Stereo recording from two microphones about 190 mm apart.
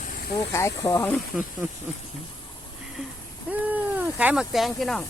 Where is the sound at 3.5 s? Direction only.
10° right (ahead or behind).